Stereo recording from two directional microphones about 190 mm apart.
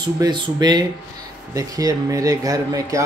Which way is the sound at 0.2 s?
20° right (ahead or behind).